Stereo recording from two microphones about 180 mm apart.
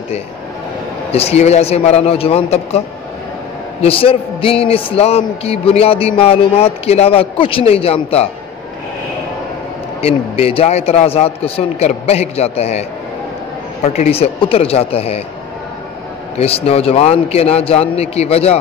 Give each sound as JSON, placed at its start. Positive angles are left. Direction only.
{"t": 1.1, "sound": "a man's voice", "side_deg": 35}
{"t": 3.8, "sound": "a man's voice", "side_deg": 30}
{"t": 10.0, "sound": "a man's voice", "side_deg": 35}
{"t": 13.8, "sound": "a man's voice", "side_deg": 35}
{"t": 16.3, "sound": "a man's voice", "side_deg": 35}